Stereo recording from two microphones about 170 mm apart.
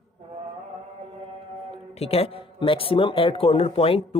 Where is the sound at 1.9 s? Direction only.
35° left (ahead or behind).